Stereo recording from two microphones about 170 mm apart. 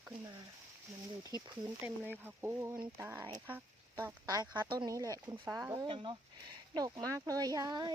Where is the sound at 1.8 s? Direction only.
10° right (ahead or behind).